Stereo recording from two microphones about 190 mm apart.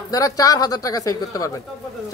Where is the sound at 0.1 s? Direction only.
20° left (ahead or behind).